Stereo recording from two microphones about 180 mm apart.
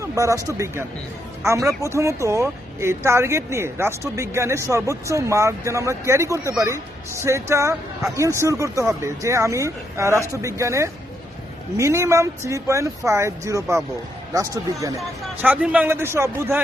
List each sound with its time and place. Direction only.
0.0 s a sound: 15° right (ahead or behind)
0.4 s a woman's voice: 15° right (ahead or behind)
14.9 s a woman's voice: 10° right (ahead or behind)